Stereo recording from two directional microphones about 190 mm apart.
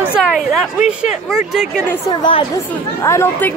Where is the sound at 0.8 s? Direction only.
5° right (ahead or behind).